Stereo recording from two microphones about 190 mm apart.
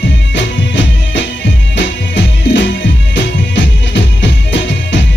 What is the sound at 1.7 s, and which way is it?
Music, 70° left (ahead or behind).